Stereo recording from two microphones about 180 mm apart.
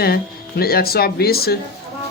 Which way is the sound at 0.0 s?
60° left (ahead or behind).